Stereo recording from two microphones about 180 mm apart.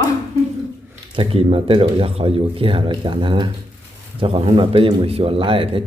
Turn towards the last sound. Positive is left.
turn(degrees=-30)  # may be behind; listen again after turning